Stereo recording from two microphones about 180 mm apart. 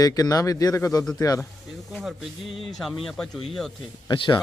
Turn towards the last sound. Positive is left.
turn(degrees=25)  # may be behind; listen again after turning